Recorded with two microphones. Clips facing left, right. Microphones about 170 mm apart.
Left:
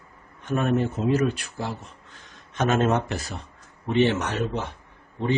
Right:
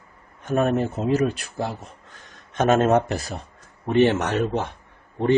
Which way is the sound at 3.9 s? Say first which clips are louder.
Right 3 dB; 50° right (ahead or behind).